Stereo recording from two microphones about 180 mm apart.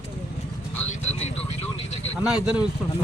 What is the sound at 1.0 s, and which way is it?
Vehicle, 35° left (ahead or behind).